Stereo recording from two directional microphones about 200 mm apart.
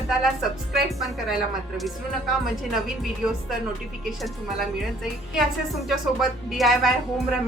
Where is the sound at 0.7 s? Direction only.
Centre (ahead or behind).